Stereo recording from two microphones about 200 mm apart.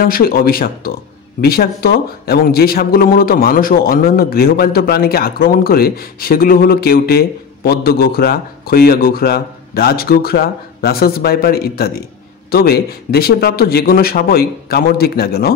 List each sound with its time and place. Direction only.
0.0 s speech: 50° left (ahead or behind)